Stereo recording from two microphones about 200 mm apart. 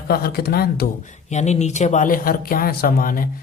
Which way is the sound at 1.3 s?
35° left (ahead or behind).